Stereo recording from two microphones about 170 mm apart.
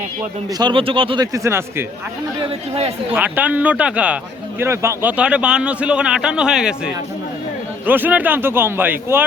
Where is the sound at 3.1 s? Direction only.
10° right (ahead or behind).